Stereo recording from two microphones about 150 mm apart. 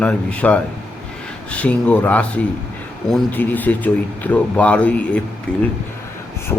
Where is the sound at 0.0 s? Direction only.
10° left (ahead or behind).